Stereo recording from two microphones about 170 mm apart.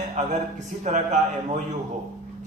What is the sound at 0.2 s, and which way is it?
Speech, 45° right (ahead or behind).